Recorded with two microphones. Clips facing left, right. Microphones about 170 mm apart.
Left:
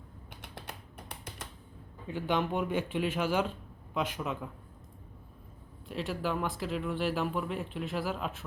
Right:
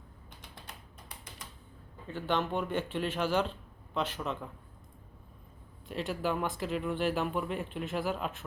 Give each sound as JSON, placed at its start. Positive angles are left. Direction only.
{"t": 1.0, "sound": "a sound", "side_deg": 65}
{"t": 2.0, "sound": "speech", "side_deg": 10}
{"t": 5.9, "sound": "speech", "side_deg": 0}